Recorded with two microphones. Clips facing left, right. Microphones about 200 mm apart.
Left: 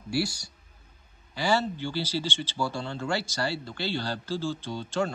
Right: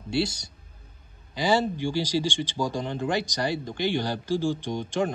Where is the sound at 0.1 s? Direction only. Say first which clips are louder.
Right 2 dB; 20° right (ahead or behind).